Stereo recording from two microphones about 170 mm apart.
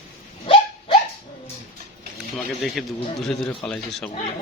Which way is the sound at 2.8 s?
Centre (ahead or behind).